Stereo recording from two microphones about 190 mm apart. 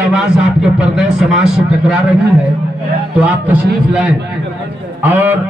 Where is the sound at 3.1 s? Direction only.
5° right (ahead or behind).